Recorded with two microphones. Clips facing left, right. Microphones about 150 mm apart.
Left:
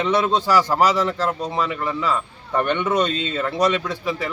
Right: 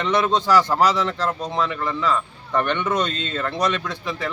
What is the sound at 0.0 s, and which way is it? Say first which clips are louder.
A man's voice: left 1 dB; 10° left (ahead or behind).